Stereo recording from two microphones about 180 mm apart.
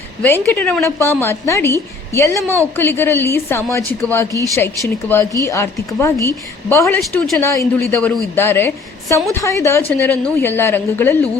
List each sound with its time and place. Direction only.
0.2 s a woman's voice: 10° left (ahead or behind)
6.8 s speech: centre (ahead or behind)
7.3 s a woman's voice: 10° left (ahead or behind)